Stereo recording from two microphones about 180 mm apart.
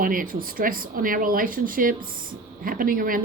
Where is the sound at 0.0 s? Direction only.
50° right (ahead or behind).